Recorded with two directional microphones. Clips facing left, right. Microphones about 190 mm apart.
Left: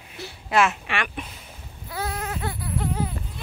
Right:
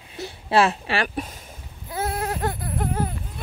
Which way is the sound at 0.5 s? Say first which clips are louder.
Right 2 dB; 35° right (ahead or behind).